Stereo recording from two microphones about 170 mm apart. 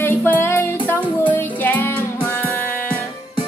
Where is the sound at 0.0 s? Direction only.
10° left (ahead or behind).